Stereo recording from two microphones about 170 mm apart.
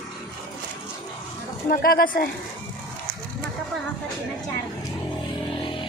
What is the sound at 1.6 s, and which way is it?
Speech, 60° left (ahead or behind).